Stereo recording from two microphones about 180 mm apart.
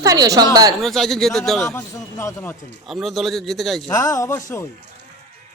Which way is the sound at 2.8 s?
Centre (ahead or behind).